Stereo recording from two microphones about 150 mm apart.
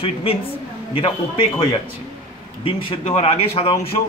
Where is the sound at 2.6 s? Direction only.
35° left (ahead or behind).